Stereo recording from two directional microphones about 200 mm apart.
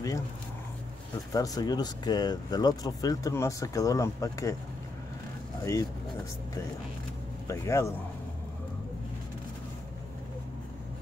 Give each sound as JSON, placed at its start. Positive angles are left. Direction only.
{"t": 1.3, "sound": "speech", "side_deg": 20}
{"t": 5.6, "sound": "speech", "side_deg": 15}
{"t": 7.4, "sound": "speech", "side_deg": 15}